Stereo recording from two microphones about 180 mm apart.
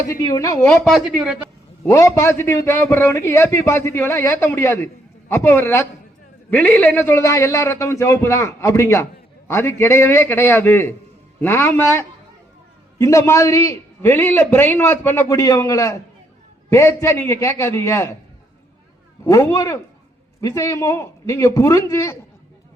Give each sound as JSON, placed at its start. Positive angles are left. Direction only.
{"t": 0.2, "sound": "speech", "side_deg": 20}
{"t": 0.7, "sound": "speech", "side_deg": 0}
{"t": 1.8, "sound": "a man's voice", "side_deg": 15}
{"t": 19.2, "sound": "a man's voice", "side_deg": 15}